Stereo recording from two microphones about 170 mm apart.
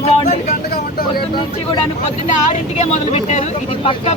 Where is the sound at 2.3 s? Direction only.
45° left (ahead or behind).